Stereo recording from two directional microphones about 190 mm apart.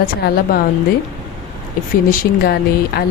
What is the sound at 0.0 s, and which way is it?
Speech, 50° left (ahead or behind).